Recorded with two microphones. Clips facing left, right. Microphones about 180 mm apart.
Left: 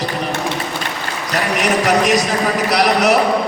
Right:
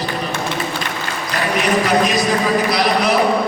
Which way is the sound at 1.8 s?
80° left.